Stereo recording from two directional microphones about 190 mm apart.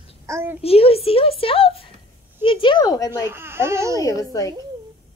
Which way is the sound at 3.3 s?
10° right (ahead or behind).